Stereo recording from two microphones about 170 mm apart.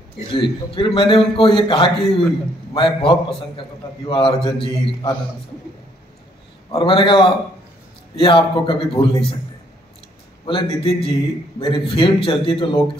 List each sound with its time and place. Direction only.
0.3 s a man's voice: 30° left (ahead or behind)
6.7 s a man's voice: 30° left (ahead or behind)
10.4 s a man's voice: 30° left (ahead or behind)